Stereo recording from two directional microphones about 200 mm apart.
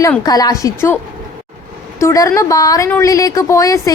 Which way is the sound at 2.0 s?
15° left (ahead or behind).